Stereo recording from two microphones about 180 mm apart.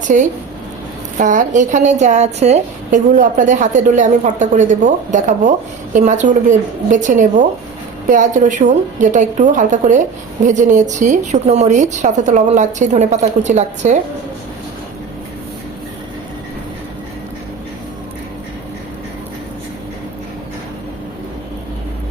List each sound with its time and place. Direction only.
0.1 s a woman's voice: 45° right (ahead or behind)